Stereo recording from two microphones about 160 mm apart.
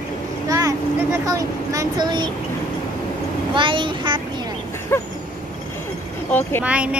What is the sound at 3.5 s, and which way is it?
Speech, 30° right (ahead or behind).